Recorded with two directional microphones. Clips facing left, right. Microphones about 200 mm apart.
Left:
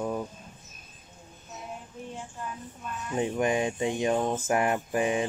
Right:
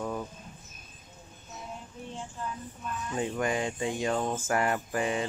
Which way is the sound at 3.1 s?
20° left (ahead or behind).